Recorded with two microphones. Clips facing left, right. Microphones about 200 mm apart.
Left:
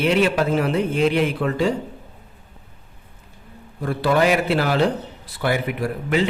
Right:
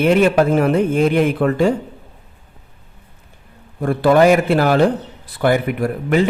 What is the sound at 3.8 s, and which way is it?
A man's voice, 50° right (ahead or behind).